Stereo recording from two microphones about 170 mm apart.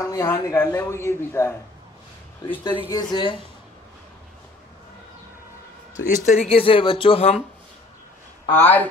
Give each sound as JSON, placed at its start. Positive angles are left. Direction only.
{"t": 0.0, "sound": "a man's voice", "side_deg": 20}
{"t": 2.9, "sound": "speech", "side_deg": 25}
{"t": 6.0, "sound": "speech", "side_deg": 50}
{"t": 6.4, "sound": "speech", "side_deg": 35}
{"t": 8.5, "sound": "a man's voice", "side_deg": 10}